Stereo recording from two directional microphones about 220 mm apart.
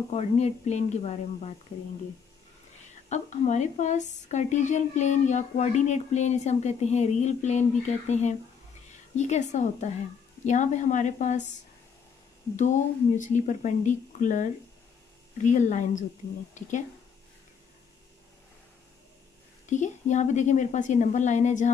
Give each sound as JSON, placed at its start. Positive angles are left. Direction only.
{"t": 0.1, "sound": "speech", "side_deg": 30}
{"t": 3.1, "sound": "a woman's voice", "side_deg": 30}
{"t": 12.5, "sound": "a woman's voice", "side_deg": 35}
{"t": 19.6, "sound": "a woman's voice", "side_deg": 35}